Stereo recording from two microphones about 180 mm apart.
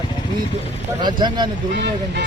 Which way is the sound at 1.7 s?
70° right (ahead or behind).